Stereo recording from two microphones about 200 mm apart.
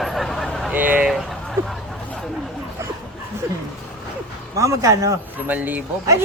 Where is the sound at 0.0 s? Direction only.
Centre (ahead or behind).